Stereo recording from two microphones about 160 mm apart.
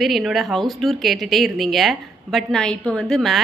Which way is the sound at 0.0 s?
Centre (ahead or behind).